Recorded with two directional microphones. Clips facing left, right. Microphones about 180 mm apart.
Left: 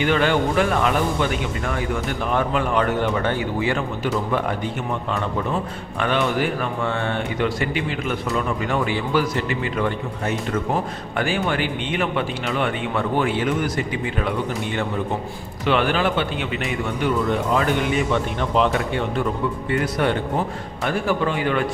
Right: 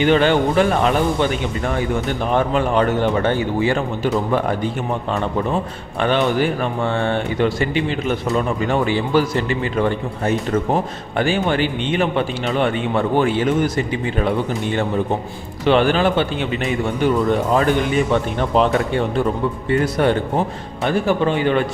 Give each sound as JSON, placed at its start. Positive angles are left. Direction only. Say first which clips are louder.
{"t": 0.0, "sound": "speech", "louder": "right 4 dB", "side_deg": -25}
{"t": 6.0, "sound": "speech", "louder": "right 4 dB", "side_deg": -30}
{"t": 15.6, "sound": "speech", "louder": "right 5 dB", "side_deg": -30}
{"t": 19.8, "sound": "speech", "louder": "right 4 dB", "side_deg": -35}